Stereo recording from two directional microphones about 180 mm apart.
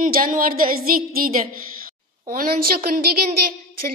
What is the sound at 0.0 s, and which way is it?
A woman's voice, 50° right (ahead or behind).